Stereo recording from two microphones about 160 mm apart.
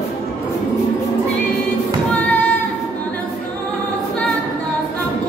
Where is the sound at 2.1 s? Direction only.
10° left (ahead or behind).